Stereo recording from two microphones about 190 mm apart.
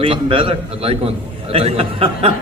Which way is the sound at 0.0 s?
30° right (ahead or behind).